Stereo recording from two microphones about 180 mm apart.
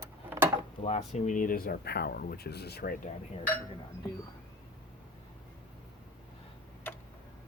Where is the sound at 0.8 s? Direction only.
40° left (ahead or behind); by 2.9 s 60° left (ahead or behind).